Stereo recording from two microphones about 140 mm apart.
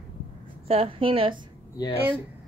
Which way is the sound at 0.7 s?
40° right (ahead or behind).